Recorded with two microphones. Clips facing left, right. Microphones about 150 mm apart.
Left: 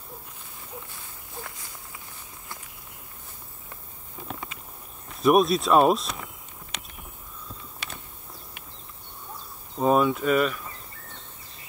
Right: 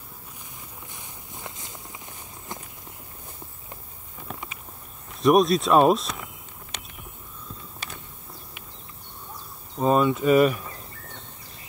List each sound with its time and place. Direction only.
0.9 s walk: 20° right (ahead or behind)
5.2 s speech: centre (ahead or behind)
9.8 s speech: centre (ahead or behind)